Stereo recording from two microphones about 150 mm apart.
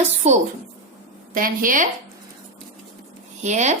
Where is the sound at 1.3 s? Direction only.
70° right (ahead or behind).